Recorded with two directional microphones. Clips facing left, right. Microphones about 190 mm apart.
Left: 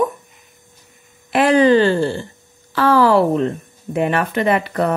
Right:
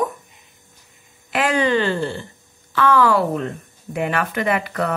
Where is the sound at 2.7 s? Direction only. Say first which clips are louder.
Left 3 dB; 30° left (ahead or behind).